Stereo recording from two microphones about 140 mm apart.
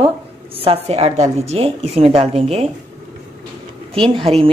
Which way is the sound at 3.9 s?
40° right (ahead or behind).